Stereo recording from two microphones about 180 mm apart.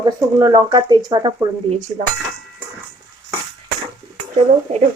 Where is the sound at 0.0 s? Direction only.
20° right (ahead or behind).